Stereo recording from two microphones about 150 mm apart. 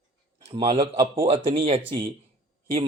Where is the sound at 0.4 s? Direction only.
35° right (ahead or behind).